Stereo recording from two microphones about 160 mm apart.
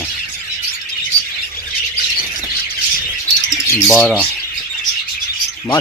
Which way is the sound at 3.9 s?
5° left (ahead or behind).